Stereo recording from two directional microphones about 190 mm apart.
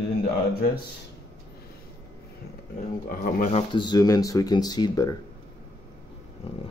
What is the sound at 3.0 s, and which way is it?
Speech, 45° left (ahead or behind).